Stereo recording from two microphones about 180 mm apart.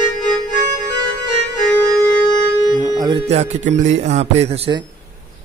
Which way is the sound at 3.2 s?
35° right (ahead or behind).